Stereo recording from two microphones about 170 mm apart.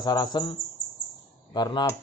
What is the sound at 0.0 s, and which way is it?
Speech, 25° left (ahead or behind).